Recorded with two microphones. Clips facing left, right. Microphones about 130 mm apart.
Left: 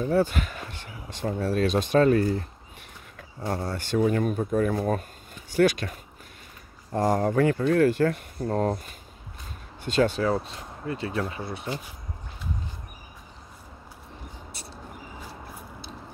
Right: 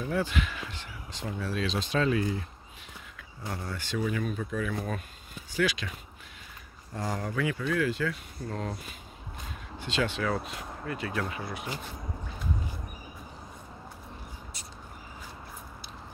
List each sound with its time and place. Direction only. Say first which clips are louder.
0.0 s speech: left 6 dB; 40° left (ahead or behind)